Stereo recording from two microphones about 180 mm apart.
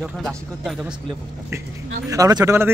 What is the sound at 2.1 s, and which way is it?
Speech, 20° right (ahead or behind).